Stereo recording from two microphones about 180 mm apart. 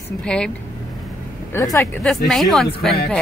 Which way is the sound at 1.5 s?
15° left (ahead or behind).